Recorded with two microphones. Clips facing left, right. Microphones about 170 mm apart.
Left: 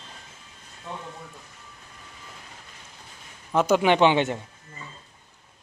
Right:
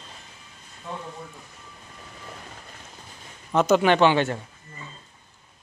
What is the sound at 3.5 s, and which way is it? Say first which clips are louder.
Speech: right 1 dB; 10° left (ahead or behind).